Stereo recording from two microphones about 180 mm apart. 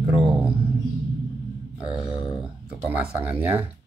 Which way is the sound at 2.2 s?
5° right (ahead or behind).